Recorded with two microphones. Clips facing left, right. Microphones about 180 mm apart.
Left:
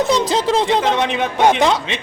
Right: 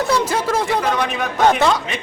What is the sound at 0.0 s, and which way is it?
A man's voice, 20° left (ahead or behind).